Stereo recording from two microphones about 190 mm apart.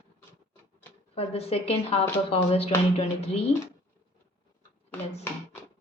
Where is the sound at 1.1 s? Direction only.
30° left (ahead or behind).